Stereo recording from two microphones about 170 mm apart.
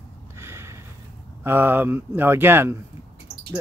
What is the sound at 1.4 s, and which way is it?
Speech, 10° right (ahead or behind).